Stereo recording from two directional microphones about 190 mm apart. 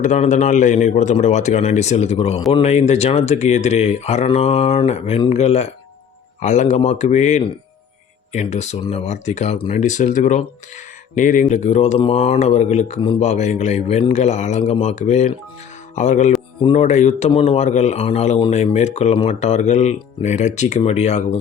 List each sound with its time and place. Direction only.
0.0 s speech: 40° left (ahead or behind)
13.0 s speech: 25° left (ahead or behind)
13.2 s speech: 40° left (ahead or behind)